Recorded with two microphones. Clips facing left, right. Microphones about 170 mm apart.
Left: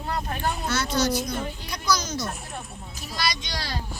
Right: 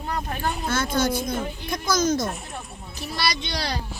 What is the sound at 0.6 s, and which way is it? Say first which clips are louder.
A child's voice: right 2 dB; 50° right (ahead or behind).